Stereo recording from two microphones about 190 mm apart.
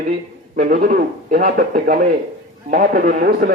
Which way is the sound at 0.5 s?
45° right (ahead or behind).